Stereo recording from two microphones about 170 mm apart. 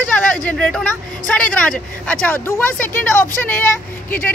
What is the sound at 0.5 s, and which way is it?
Speech, 5° left (ahead or behind).